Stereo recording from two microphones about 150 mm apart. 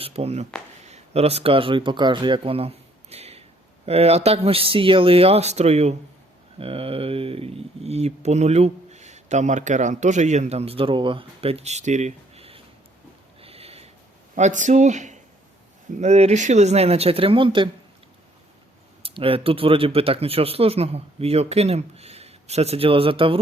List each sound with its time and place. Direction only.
0.0 s speech: 45° right (ahead or behind)
13.4 s a sound: 40° right (ahead or behind)
14.3 s speech: 55° right (ahead or behind); by 17.7 s 35° right (ahead or behind)
19.0 s speech: 40° right (ahead or behind)